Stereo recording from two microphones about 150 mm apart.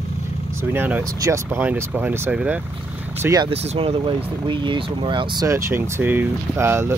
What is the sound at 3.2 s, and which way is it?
Speech, 20° right (ahead or behind).